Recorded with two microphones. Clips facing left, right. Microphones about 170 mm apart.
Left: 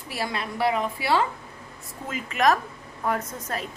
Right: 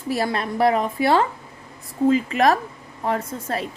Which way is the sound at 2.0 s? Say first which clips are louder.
Right 6 dB; 30° right (ahead or behind).